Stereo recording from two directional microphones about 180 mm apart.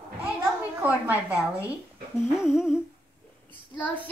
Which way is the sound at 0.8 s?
10° right (ahead or behind).